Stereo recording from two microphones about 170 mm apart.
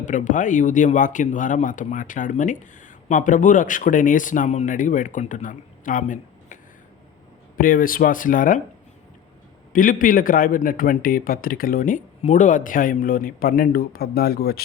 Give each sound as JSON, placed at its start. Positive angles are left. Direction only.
{"t": 0.0, "sound": "speech", "side_deg": 45}
{"t": 9.7, "sound": "speech", "side_deg": 55}